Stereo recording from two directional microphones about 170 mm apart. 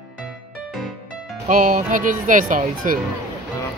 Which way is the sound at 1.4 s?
50° right (ahead or behind).